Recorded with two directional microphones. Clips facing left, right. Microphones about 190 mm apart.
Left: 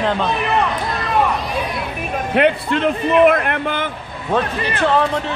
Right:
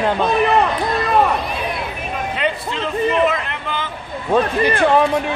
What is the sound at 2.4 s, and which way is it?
A man's voice, 60° left (ahead or behind).